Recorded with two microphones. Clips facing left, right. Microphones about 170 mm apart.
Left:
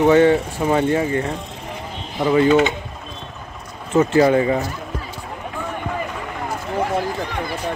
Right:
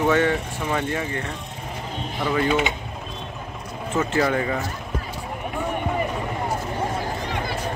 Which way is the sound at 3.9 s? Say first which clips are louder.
Left 8 dB; 25° left (ahead or behind).